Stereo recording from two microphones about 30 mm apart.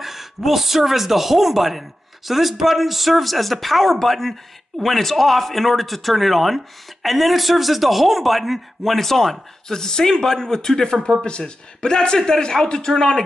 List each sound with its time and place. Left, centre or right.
0.0 s speech: centre
9.7 s a man's voice: centre